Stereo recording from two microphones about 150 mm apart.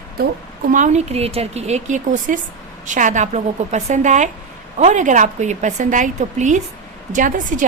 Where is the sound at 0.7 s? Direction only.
55° right (ahead or behind).